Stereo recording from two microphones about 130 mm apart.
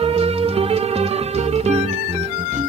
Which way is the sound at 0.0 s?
50° right (ahead or behind).